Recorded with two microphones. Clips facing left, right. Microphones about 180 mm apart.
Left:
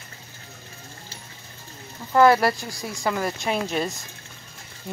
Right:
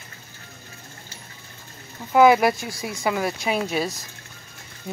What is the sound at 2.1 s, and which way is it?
Speech, 15° right (ahead or behind).